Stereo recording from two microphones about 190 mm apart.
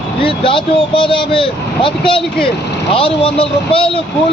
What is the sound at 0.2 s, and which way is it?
Speech, 25° left (ahead or behind).